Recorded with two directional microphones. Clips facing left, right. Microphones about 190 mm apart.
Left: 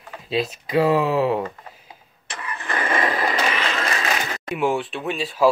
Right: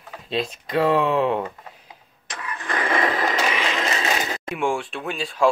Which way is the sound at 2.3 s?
5° left (ahead or behind).